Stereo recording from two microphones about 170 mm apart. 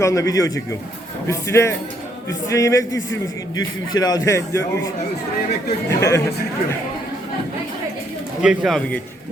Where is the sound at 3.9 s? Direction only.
25° left (ahead or behind).